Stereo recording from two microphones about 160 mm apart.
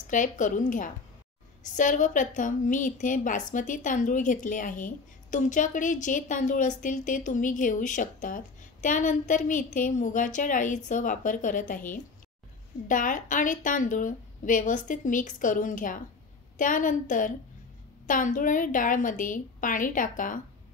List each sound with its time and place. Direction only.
0.1 s a woman's voice: 55° left (ahead or behind)
12.8 s a woman's voice: 55° left (ahead or behind)